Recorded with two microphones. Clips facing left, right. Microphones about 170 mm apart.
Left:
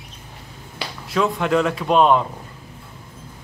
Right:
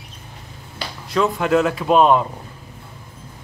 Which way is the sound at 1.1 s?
Centre (ahead or behind).